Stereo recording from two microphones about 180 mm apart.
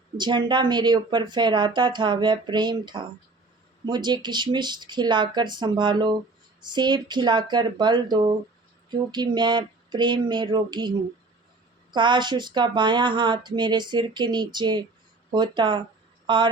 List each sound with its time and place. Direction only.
0.2 s speech: 25° right (ahead or behind)
11.9 s speech: 25° right (ahead or behind)